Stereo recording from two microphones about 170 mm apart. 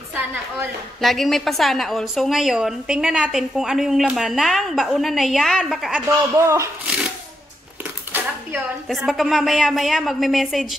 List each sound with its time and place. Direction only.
0.1 s a woman's voice: 10° right (ahead or behind)
1.0 s a woman's voice: centre (ahead or behind)
6.0 s a man's voice: 15° right (ahead or behind)
8.1 s a sound: 10° right (ahead or behind)
8.8 s a woman's voice: centre (ahead or behind)